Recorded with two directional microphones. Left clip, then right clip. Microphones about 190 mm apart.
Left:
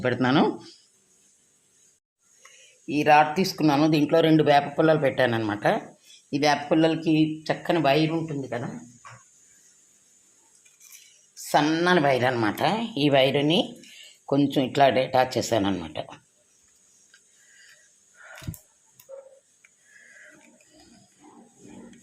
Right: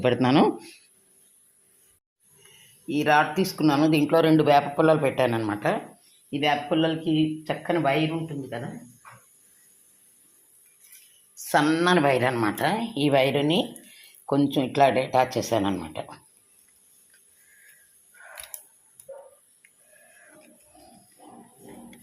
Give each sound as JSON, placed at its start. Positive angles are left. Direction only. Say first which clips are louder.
{"t": 0.0, "sound": "speech", "louder": "right 2 dB", "side_deg": -5}
{"t": 2.8, "sound": "speech", "louder": "left 3 dB", "side_deg": 5}
{"t": 6.3, "sound": "speech", "louder": "left 2 dB", "side_deg": 20}
{"t": 8.1, "sound": "speech", "louder": "left 3 dB", "side_deg": 30}
{"t": 11.4, "sound": "speech", "louder": "even", "side_deg": 0}